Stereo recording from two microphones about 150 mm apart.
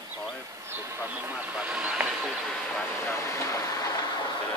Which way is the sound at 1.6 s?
10° right (ahead or behind).